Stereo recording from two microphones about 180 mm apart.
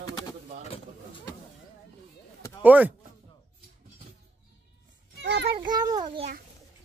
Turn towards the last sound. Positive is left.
turn(degrees=-25)  # may be behind; listen again after turning